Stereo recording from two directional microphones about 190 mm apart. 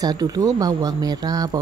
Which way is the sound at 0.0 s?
20° right (ahead or behind).